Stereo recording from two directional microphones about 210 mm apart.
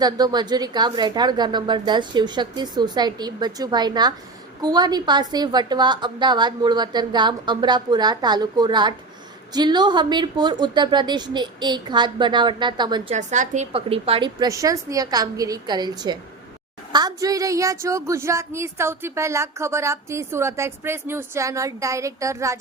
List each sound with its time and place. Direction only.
0.0 s a woman's voice: 20° right (ahead or behind)
13.1 s a woman's voice: 35° right (ahead or behind); by 22.5 s 15° right (ahead or behind)